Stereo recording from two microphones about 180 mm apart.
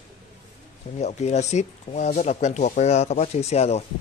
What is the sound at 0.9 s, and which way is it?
Speech, 40° left (ahead or behind).